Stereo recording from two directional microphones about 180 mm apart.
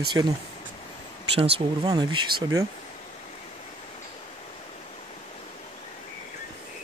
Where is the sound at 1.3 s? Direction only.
30° right (ahead or behind).